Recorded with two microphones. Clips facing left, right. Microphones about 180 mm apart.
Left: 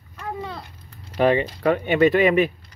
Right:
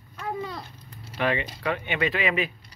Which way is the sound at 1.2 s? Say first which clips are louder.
Left 8 dB; 40° left (ahead or behind).